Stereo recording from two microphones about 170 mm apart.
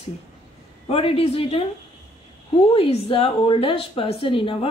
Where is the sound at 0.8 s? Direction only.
35° left (ahead or behind).